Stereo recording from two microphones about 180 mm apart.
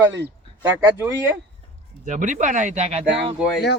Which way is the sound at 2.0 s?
45° right (ahead or behind).